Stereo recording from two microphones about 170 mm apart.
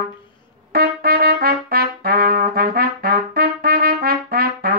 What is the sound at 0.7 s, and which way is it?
Trumpet, 65° right (ahead or behind).